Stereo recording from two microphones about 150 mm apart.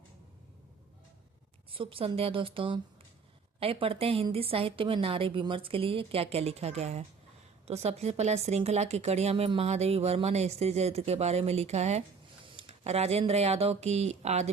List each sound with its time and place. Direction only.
1.7 s a woman's voice: 35° right (ahead or behind)